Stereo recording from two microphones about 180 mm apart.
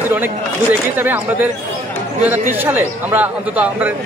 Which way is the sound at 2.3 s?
10° right (ahead or behind).